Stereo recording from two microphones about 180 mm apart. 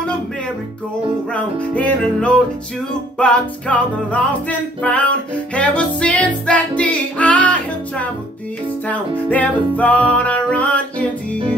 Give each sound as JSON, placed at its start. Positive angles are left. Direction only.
{"t": 1.8, "sound": "music", "side_deg": 5}